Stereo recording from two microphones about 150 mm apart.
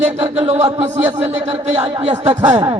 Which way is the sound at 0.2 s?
45° right (ahead or behind).